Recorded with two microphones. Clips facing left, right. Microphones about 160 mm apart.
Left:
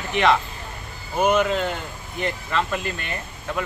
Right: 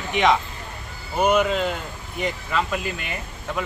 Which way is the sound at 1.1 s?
5° right (ahead or behind).